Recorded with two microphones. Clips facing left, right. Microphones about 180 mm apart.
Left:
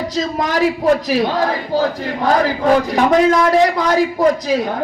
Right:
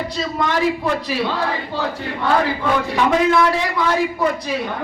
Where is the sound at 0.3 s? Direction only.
40° left (ahead or behind).